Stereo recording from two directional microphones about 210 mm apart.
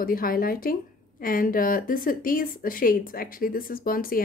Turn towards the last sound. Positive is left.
turn(degrees=45)  # may be behind; listen again after turning